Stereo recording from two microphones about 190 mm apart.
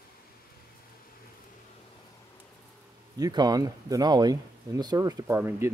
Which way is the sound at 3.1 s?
20° right (ahead or behind).